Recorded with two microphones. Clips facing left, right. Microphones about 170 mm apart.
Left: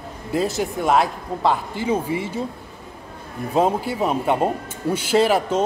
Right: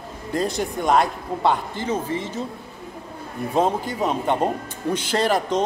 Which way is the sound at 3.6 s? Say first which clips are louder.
Left 2 dB; 10° left (ahead or behind).